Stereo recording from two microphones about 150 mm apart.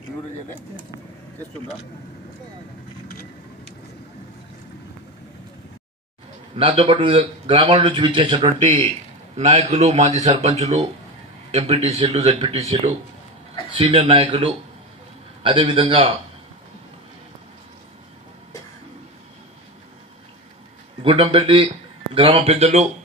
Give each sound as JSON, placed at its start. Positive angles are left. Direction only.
{"t": 6.5, "sound": "speech", "side_deg": -40}
{"t": 9.4, "sound": "a man's voice", "side_deg": -50}
{"t": 21.0, "sound": "a man's voice", "side_deg": -35}